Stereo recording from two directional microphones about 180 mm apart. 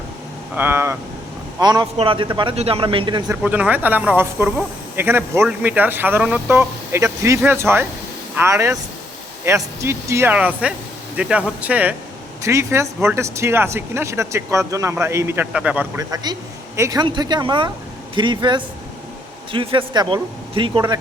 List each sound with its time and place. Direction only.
0.5 s a man's voice: 10° right (ahead or behind); by 3.2 s 30° right (ahead or behind)
3.2 s speech: 5° right (ahead or behind)
16.0 s a man's voice: 20° right (ahead or behind)